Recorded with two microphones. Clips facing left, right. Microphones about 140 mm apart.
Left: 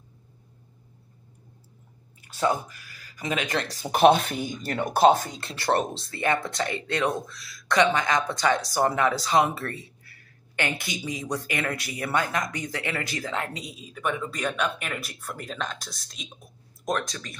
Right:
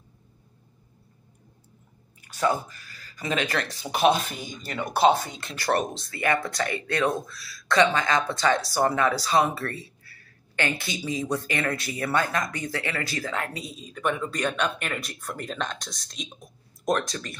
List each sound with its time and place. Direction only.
2.2 s speech: 20° left (ahead or behind)
3.6 s speech: 50° left (ahead or behind)
5.4 s speech: 35° left (ahead or behind); by 17.4 s centre (ahead or behind)